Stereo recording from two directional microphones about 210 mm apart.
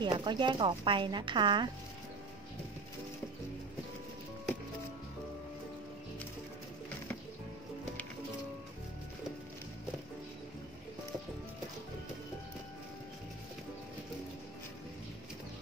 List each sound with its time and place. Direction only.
0.0 s speech: 20° right (ahead or behind)